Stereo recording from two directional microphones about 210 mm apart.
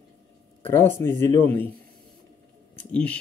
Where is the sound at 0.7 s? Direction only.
10° left (ahead or behind).